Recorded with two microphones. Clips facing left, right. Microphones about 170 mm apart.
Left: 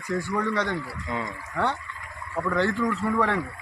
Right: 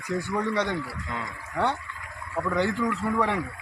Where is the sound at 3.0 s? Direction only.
5° right (ahead or behind).